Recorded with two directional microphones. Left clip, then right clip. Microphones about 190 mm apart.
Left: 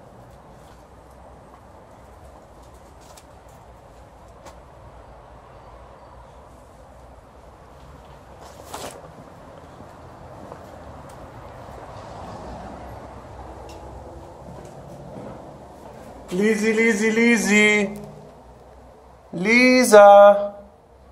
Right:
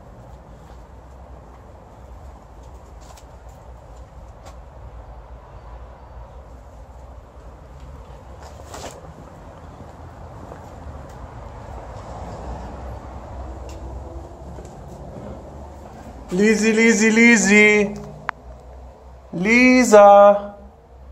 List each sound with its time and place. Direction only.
16.3 s speech: 20° right (ahead or behind)
17.6 s speech: centre (ahead or behind)
19.3 s speech: 5° right (ahead or behind)